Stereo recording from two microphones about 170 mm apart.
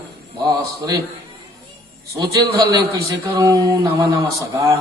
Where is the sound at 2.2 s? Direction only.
20° right (ahead or behind).